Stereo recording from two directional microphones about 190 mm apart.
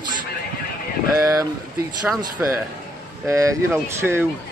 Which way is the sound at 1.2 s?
15° right (ahead or behind).